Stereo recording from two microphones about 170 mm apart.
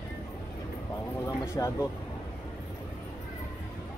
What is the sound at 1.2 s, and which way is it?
Speech, 20° left (ahead or behind).